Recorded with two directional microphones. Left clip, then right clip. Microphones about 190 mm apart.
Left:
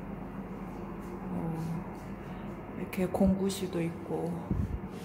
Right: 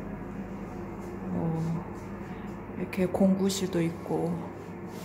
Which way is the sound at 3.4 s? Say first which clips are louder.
Right 4 dB; 15° right (ahead or behind).